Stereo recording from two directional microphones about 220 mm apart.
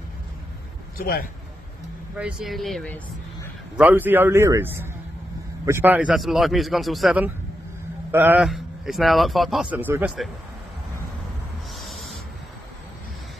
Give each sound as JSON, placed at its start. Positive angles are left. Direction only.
{"t": 0.9, "sound": "a man's voice", "side_deg": 40}
{"t": 2.1, "sound": "a man's voice", "side_deg": -5}
{"t": 3.7, "sound": "a man's voice", "side_deg": -10}
{"t": 11.7, "sound": "a sound", "side_deg": 0}